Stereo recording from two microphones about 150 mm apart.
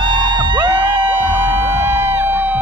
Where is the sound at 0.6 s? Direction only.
15° right (ahead or behind).